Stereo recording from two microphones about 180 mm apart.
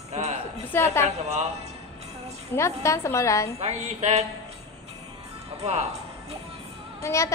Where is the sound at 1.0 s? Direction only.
40° right (ahead or behind).